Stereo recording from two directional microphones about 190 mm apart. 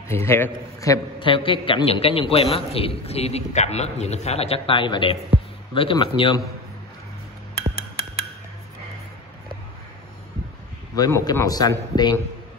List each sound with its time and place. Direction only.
0.1 s a man's voice: 10° left (ahead or behind)
11.0 s a man's voice: 15° left (ahead or behind)